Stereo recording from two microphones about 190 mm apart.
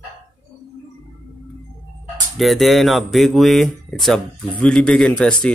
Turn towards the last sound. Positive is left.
turn(degrees=5)  # may be behind; listen again after turning